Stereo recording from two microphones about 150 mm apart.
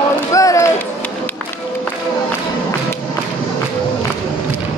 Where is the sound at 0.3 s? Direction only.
20° left (ahead or behind).